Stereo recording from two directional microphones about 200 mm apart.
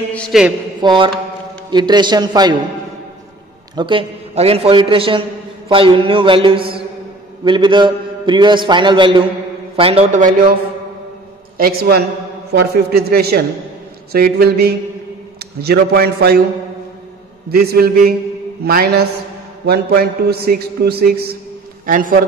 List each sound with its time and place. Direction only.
0.1 s a man's voice: centre (ahead or behind)
0.7 s a sound: 25° right (ahead or behind)
1.7 s a man's voice: 20° right (ahead or behind)
3.7 s a man's voice: 25° right (ahead or behind)
11.5 s a man's voice: 50° right (ahead or behind)
17.5 s a man's voice: 50° right (ahead or behind)